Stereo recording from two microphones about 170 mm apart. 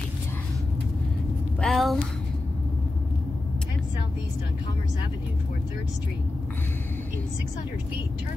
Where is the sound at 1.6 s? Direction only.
Centre (ahead or behind).